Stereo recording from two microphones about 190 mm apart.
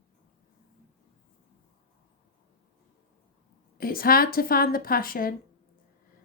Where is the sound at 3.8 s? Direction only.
50° left (ahead or behind).